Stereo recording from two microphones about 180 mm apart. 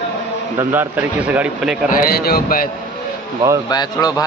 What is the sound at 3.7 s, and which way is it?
Speech, 20° left (ahead or behind).